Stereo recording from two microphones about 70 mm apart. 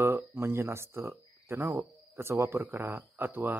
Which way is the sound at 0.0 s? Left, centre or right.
Right.